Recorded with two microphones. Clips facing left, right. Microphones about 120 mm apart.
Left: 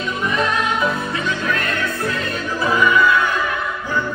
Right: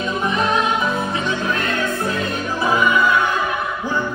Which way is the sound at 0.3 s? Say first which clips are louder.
Right 1 dB; 25° right (ahead or behind).